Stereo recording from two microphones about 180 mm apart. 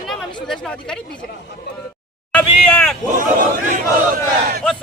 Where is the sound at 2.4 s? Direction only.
5° left (ahead or behind).